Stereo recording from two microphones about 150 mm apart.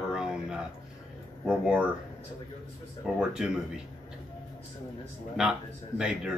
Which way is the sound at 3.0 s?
5° right (ahead or behind).